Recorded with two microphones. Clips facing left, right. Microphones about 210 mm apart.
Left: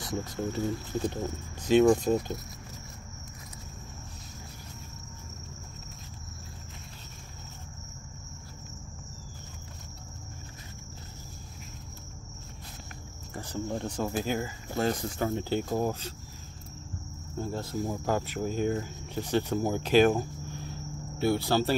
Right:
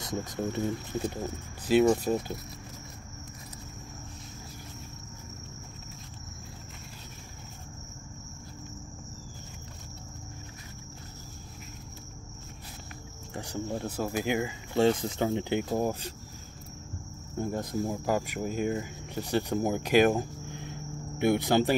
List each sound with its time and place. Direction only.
0.0 s speech: 20° right (ahead or behind)
1.7 s speech: 5° right (ahead or behind)
13.3 s speech: 15° right (ahead or behind)
17.4 s speech: 15° right (ahead or behind)